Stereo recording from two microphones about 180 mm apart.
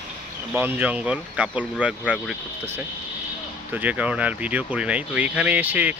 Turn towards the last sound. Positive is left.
turn(degrees=-10)  # may be behind; listen again after turning